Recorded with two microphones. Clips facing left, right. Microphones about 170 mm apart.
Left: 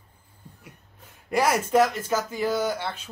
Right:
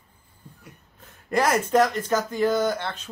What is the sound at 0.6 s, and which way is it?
Speech, 10° left (ahead or behind).